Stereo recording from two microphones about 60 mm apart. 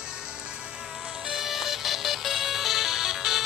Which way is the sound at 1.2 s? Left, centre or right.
Centre.